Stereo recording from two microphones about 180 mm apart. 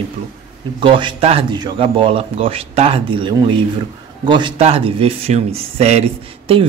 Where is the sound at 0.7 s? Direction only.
25° right (ahead or behind).